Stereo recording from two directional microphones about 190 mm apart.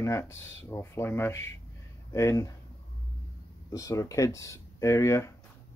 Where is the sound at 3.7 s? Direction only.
15° left (ahead or behind).